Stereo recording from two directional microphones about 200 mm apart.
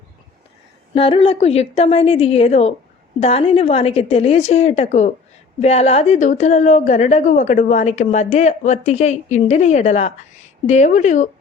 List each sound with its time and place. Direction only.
0.9 s a woman's voice: 25° left (ahead or behind)